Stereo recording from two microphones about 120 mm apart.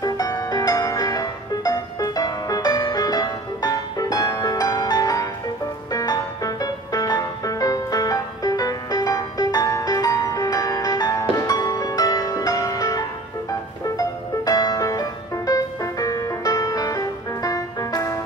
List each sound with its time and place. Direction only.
0.0 s music: 30° left (ahead or behind)